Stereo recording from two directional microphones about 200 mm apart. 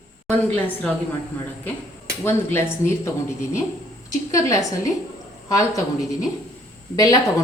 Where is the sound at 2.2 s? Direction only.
10° left (ahead or behind).